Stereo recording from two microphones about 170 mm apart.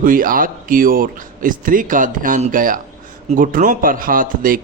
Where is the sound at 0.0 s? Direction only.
55° right (ahead or behind).